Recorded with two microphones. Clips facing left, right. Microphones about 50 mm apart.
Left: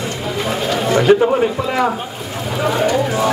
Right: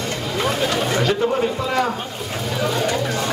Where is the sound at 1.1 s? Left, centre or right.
Left.